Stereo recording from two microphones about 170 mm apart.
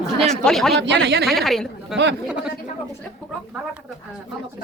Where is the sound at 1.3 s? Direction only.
Centre (ahead or behind).